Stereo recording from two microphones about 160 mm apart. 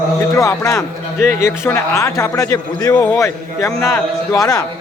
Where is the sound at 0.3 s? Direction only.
20° left (ahead or behind).